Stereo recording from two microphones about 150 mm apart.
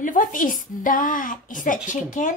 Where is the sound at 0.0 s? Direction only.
60° left (ahead or behind).